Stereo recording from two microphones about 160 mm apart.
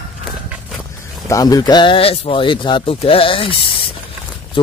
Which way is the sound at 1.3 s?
20° left (ahead or behind).